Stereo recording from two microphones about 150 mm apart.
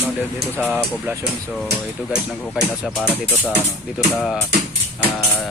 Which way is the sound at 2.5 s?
Centre (ahead or behind).